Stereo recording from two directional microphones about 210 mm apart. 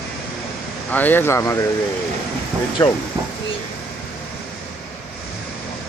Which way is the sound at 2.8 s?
15° left (ahead or behind).